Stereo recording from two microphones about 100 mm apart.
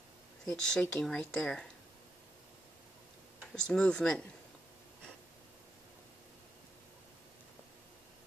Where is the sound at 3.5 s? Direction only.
10° left (ahead or behind).